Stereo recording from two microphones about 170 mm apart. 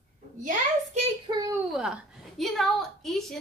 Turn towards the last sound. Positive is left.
turn(degrees=0)  # may be behind; listen again after turning